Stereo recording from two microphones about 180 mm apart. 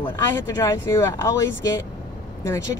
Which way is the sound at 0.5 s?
15° left (ahead or behind).